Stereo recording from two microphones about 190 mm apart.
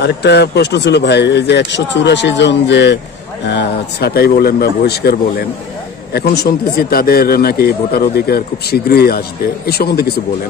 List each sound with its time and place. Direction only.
0.0 s speech: 60° left (ahead or behind)